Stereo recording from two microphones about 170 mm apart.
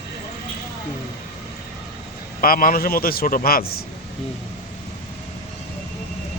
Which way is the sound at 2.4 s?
55° left (ahead or behind).